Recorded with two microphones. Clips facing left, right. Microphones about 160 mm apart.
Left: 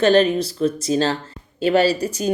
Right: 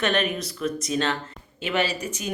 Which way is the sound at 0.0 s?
30° left (ahead or behind).